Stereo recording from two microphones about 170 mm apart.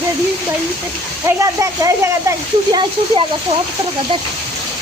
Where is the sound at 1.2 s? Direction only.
20° right (ahead or behind).